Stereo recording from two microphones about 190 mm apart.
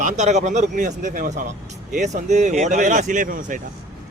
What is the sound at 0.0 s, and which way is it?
Speech, 40° right (ahead or behind).